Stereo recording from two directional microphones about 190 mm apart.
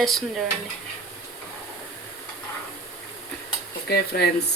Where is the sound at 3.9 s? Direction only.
60° left (ahead or behind).